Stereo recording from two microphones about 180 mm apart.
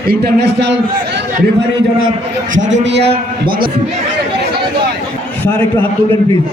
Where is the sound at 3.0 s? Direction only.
25° right (ahead or behind).